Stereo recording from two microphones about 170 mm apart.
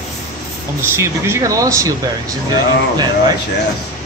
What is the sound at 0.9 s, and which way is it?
Speech, 15° right (ahead or behind).